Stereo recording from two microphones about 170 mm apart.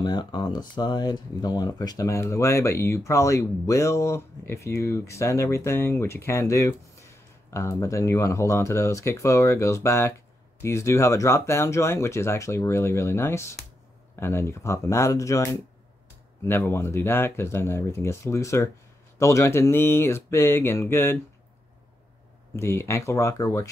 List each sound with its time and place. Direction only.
0.0 s speech: 25° left (ahead or behind)
22.6 s speech: 15° left (ahead or behind)